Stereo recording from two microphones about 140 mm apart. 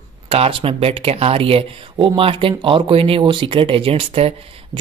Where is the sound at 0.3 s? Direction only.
45° right (ahead or behind).